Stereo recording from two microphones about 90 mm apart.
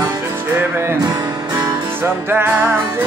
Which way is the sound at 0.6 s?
25° right (ahead or behind).